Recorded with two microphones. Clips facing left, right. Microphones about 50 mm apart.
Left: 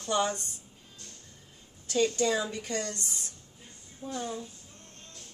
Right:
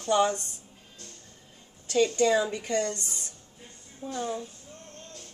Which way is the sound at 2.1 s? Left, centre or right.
Right.